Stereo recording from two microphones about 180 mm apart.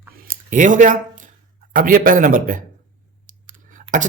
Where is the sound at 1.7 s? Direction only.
50° right (ahead or behind).